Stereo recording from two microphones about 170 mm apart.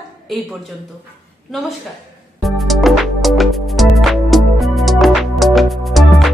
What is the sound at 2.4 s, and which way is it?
Music, centre (ahead or behind).